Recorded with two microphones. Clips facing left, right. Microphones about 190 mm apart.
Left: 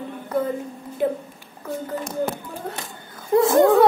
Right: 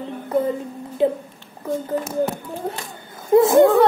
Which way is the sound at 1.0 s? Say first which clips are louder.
Right 4 dB; 25° right (ahead or behind).